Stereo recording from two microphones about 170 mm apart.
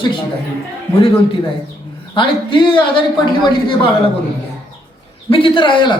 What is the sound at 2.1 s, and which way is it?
Speech, 30° left (ahead or behind).